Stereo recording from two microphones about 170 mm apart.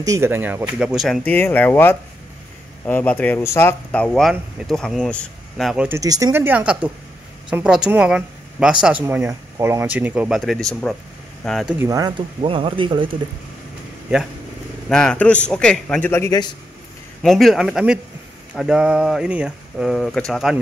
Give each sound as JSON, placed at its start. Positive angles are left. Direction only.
{"t": 0.0, "sound": "speech", "side_deg": -15}
{"t": 5.9, "sound": "speech", "side_deg": -20}
{"t": 11.8, "sound": "speech", "side_deg": -20}
{"t": 12.4, "sound": "speech", "side_deg": -30}
{"t": 14.9, "sound": "speech", "side_deg": 5}
{"t": 16.1, "sound": "a man's voice", "side_deg": 20}
{"t": 17.2, "sound": "speech", "side_deg": 0}